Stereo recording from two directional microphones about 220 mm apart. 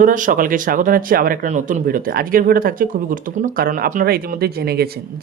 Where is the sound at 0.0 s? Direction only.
35° right (ahead or behind).